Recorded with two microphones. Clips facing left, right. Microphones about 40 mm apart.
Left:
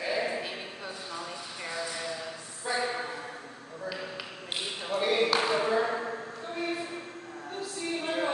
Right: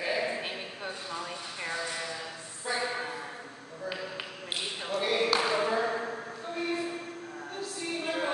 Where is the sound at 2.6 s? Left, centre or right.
Centre.